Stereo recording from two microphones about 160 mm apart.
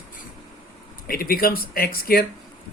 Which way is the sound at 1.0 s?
65° left (ahead or behind).